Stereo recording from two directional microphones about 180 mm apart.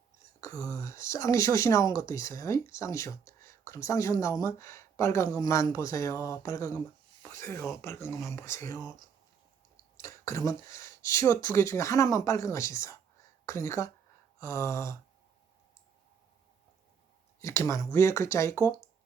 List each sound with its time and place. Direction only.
0.4 s speech: 15° left (ahead or behind)
10.0 s speech: 15° left (ahead or behind)
17.4 s speech: 15° left (ahead or behind)